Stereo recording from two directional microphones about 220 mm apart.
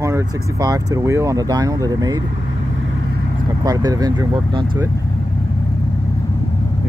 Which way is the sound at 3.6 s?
15° right (ahead or behind).